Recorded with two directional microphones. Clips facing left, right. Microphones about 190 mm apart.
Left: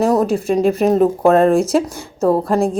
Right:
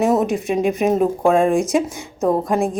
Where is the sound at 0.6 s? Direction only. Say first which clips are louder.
Left 3 dB; 15° right (ahead or behind).